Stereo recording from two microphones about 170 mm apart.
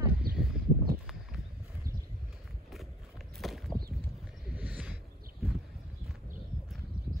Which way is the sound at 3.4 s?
Centre (ahead or behind).